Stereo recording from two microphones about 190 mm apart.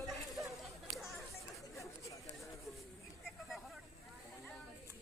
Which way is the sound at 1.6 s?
15° left (ahead or behind).